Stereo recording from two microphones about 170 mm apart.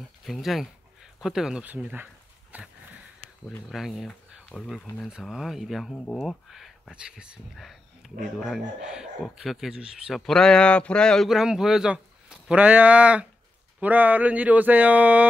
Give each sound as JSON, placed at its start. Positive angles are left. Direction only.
{"t": 0.2, "sound": "speech", "side_deg": 0}
{"t": 2.5, "sound": "sniff", "side_deg": -10}
{"t": 3.4, "sound": "speech", "side_deg": 0}